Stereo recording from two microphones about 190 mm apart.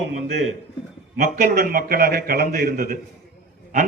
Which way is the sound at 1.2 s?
45° right (ahead or behind).